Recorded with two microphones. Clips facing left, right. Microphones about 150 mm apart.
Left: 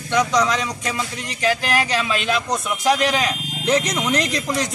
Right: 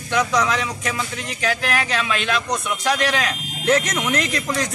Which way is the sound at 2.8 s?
20° left (ahead or behind).